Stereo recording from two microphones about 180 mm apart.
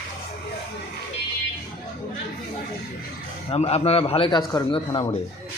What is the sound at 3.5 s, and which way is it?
A man's voice, 35° left (ahead or behind).